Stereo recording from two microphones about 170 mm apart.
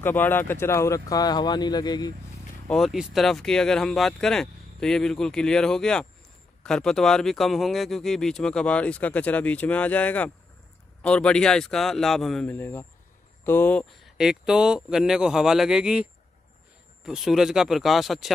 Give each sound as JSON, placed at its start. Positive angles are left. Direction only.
{"t": 0.0, "sound": "speech", "side_deg": 10}
{"t": 2.7, "sound": "speech", "side_deg": 0}
{"t": 14.0, "sound": "speech", "side_deg": -5}